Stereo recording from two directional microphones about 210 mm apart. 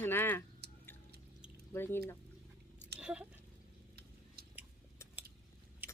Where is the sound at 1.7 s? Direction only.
10° left (ahead or behind).